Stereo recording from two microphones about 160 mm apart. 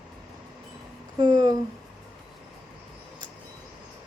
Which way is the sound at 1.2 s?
25° right (ahead or behind).